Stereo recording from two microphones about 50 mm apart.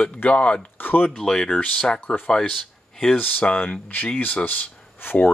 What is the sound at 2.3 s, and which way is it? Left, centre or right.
Speech, centre.